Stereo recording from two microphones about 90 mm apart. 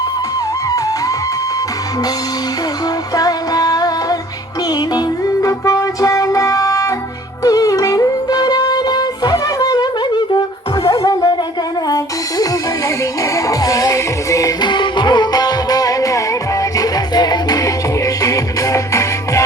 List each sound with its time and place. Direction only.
3.2 s music: 45° left (ahead or behind)
13.3 s music: 40° left (ahead or behind)
14.6 s music: 60° left (ahead or behind); by 19.4 s 35° left (ahead or behind)